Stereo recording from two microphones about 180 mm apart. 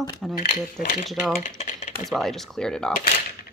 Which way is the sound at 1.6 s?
40° left (ahead or behind).